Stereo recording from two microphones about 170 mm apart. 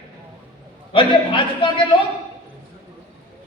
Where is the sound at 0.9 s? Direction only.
30° left (ahead or behind).